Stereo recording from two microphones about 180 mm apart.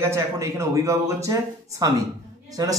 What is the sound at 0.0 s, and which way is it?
Speech, 15° right (ahead or behind).